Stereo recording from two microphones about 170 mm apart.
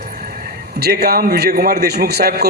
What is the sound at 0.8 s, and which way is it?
A man's voice, 70° right (ahead or behind).